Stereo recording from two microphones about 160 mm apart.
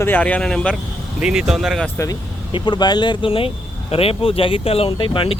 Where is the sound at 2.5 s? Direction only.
30° left (ahead or behind).